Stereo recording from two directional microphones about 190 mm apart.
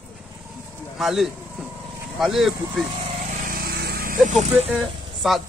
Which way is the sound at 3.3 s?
50° right (ahead or behind).